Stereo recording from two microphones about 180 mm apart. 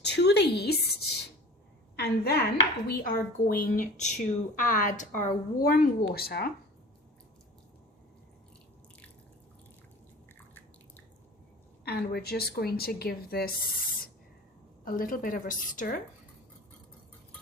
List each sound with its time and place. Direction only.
0.0 s a sound: 70° left (ahead or behind)
2.0 s speech: 60° left (ahead or behind)
11.9 s a woman's voice: 65° left (ahead or behind)
14.8 s speech: 50° left (ahead or behind)